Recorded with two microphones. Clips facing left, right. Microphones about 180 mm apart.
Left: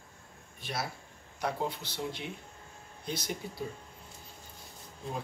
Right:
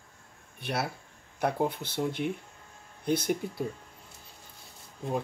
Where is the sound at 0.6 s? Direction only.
60° right (ahead or behind).